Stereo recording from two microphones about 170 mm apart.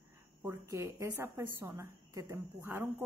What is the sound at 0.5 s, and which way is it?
A woman's voice, 15° right (ahead or behind).